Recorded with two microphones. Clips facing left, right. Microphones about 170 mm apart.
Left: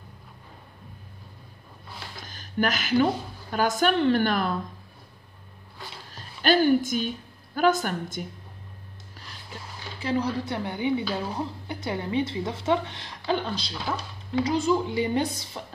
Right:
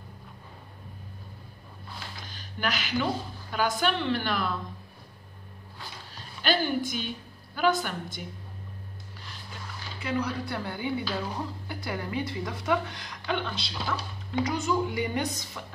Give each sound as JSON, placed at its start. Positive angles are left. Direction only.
{"t": 2.2, "sound": "a sound", "side_deg": 45}
{"t": 3.5, "sound": "a woman's voice", "side_deg": 45}
{"t": 6.1, "sound": "a woman's voice", "side_deg": 45}
{"t": 10.0, "sound": "speech", "side_deg": 30}